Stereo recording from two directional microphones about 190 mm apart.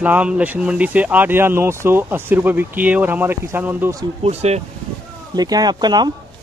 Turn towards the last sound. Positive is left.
turn(degrees=-20)  # may be behind; listen again after turning